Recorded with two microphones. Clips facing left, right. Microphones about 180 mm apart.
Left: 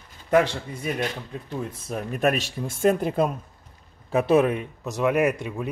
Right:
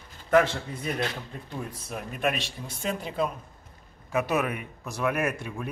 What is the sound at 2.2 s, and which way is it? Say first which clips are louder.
Speech: left 6 dB; 40° left (ahead or behind).